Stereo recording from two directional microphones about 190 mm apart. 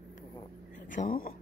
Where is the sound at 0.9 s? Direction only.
45° left (ahead or behind).